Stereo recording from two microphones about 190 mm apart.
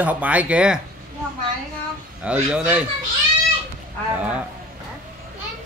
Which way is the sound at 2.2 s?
5° right (ahead or behind).